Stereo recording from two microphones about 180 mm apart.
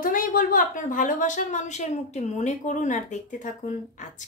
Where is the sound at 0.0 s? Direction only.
50° left (ahead or behind).